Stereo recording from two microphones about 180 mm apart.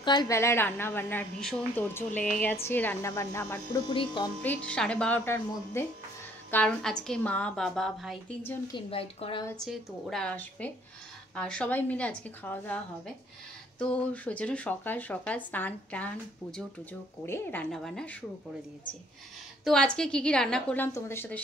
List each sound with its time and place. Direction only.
0.0 s a woman's voice: 25° left (ahead or behind)
3.9 s speech: 25° left (ahead or behind)
4.4 s a woman's voice: 5° left (ahead or behind)
8.7 s a woman's voice: 30° left (ahead or behind)
9.6 s a woman's voice: centre (ahead or behind)
17.3 s a woman's voice: 10° left (ahead or behind)
19.6 s a woman's voice: 5° left (ahead or behind)